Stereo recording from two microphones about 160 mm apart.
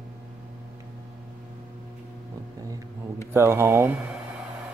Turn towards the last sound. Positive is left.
turn(degrees=-15)  # may be behind; listen again after turning